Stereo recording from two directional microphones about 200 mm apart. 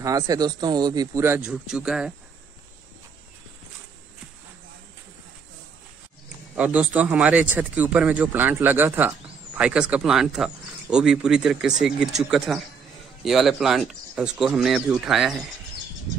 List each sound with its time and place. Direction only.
0.0 s speech: 20° right (ahead or behind)
6.5 s speech: 5° right (ahead or behind)